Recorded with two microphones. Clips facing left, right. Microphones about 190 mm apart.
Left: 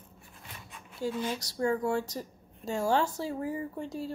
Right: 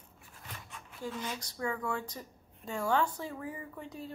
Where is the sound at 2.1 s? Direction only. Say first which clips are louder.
Left 7 dB; 30° left (ahead or behind).